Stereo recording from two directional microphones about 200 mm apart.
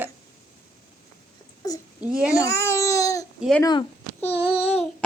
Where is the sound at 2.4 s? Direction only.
15° left (ahead or behind).